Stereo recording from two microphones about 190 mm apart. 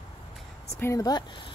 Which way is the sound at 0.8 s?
15° left (ahead or behind).